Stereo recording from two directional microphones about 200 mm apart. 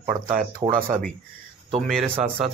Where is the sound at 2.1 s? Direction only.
25° right (ahead or behind).